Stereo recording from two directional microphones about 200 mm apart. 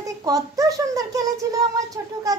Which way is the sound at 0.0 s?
15° right (ahead or behind).